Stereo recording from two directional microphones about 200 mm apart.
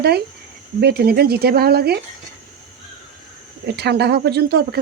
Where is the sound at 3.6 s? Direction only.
55° right (ahead or behind).